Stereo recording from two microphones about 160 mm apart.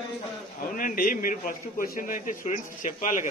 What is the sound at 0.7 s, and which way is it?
A man's voice, 60° left (ahead or behind).